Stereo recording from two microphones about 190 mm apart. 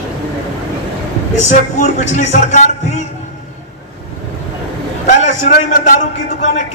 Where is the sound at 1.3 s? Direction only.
35° left (ahead or behind).